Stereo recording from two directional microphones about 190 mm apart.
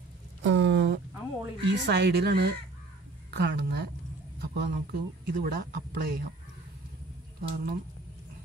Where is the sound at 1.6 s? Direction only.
65° right (ahead or behind).